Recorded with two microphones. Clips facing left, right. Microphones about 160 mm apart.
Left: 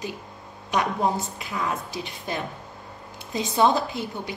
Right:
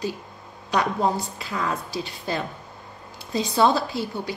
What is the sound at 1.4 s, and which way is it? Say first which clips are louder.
A woman's voice: right 1 dB; 15° left (ahead or behind).